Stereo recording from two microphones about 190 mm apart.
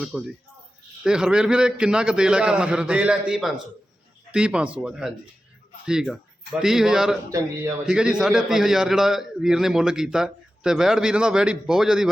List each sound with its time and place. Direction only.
0.0 s a man's voice: 5° right (ahead or behind)
7.3 s speech: 15° right (ahead or behind)
7.9 s a man's voice: 5° right (ahead or behind)